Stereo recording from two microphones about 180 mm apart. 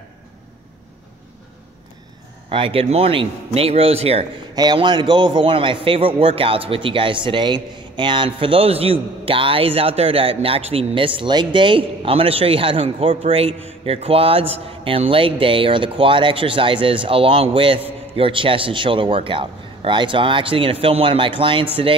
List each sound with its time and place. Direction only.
2.5 s a man's voice: 30° right (ahead or behind)